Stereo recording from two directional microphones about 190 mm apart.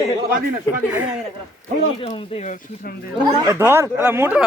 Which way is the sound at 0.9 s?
5° right (ahead or behind).